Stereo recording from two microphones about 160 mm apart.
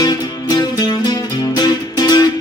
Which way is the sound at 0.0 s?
25° left (ahead or behind).